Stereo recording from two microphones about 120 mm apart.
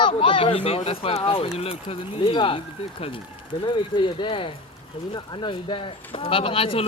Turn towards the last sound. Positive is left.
turn(degrees=50)  # may be behind; listen again after turning